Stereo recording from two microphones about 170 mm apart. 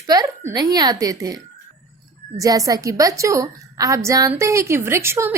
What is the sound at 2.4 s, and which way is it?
A woman's voice, 20° right (ahead or behind).